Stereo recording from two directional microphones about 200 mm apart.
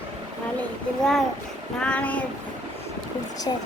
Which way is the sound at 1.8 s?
5° left (ahead or behind).